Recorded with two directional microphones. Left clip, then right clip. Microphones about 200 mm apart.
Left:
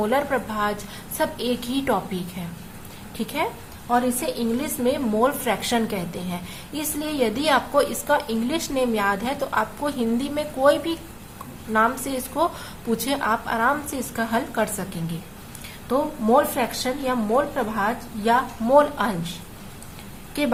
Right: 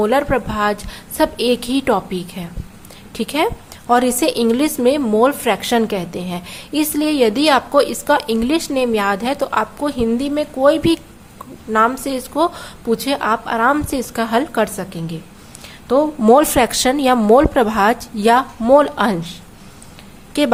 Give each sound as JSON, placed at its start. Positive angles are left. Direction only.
{"t": 0.0, "sound": "a woman's voice", "side_deg": -30}
{"t": 16.2, "sound": "a woman's voice", "side_deg": -45}